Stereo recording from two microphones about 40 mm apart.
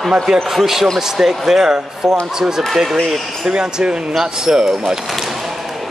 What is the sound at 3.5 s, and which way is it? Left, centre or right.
Speech, right.